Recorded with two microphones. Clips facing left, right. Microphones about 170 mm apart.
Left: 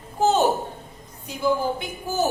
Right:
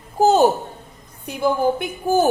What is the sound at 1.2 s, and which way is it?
A woman's voice, 55° right (ahead or behind).